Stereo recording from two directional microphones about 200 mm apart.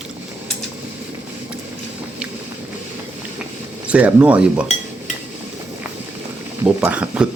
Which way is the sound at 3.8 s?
5° right (ahead or behind).